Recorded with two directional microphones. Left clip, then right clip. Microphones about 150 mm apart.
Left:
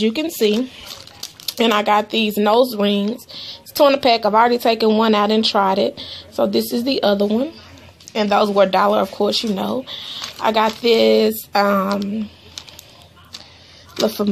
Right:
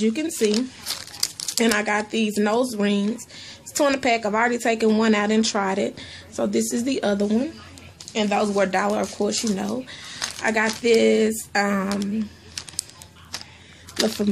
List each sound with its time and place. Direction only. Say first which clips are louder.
0.0 s a woman's voice: left 4 dB; 25° left (ahead or behind)
8.1 s speech: left 6 dB; 25° left (ahead or behind)